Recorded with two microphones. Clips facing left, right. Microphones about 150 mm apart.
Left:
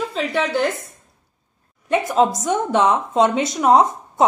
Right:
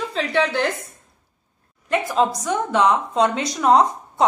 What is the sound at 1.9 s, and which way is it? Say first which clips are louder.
A woman's voice: left 3 dB; 20° left (ahead or behind).